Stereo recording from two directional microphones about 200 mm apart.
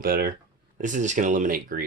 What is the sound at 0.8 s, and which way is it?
Speech, 40° right (ahead or behind).